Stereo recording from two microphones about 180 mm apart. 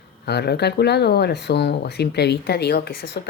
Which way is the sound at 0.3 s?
65° left (ahead or behind).